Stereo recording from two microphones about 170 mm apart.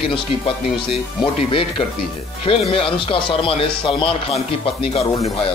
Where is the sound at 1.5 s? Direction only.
30° left (ahead or behind).